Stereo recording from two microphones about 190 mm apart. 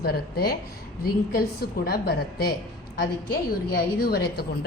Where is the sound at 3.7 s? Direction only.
55° left (ahead or behind).